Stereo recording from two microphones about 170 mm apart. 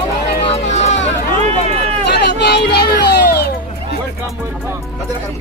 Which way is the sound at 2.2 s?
80° left.